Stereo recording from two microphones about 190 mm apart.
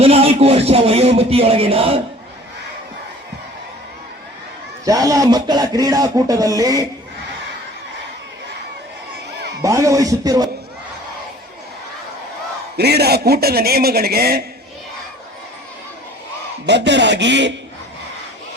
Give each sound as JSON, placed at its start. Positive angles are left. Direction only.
{"t": 0.0, "sound": "a sound", "side_deg": -30}
{"t": 4.9, "sound": "speech", "side_deg": -20}
{"t": 9.6, "sound": "a man's voice", "side_deg": -15}
{"t": 12.7, "sound": "speech", "side_deg": -60}
{"t": 16.6, "sound": "speech", "side_deg": -65}